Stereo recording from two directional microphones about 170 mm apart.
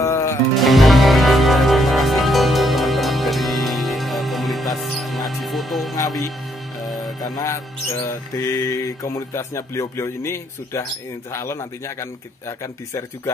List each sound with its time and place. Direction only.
0.0 s music: 15° left (ahead or behind)
0.6 s music: centre (ahead or behind)
7.2 s music: 20° left (ahead or behind)
8.1 s speech: 15° left (ahead or behind)